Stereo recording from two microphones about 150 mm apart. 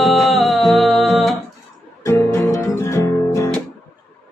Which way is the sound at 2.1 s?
20° left (ahead or behind).